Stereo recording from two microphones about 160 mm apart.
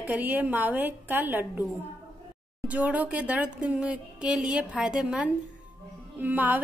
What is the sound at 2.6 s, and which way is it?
A woman's voice, 10° right (ahead or behind).